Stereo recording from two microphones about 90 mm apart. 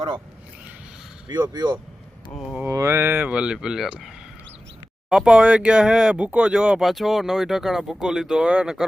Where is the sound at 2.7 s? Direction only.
30° right (ahead or behind); by 3.9 s 5° right (ahead or behind).